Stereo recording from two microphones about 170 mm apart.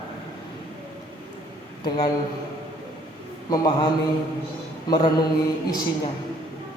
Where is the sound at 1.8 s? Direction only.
25° left (ahead or behind).